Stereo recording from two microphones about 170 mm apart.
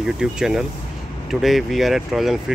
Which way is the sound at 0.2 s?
5° right (ahead or behind).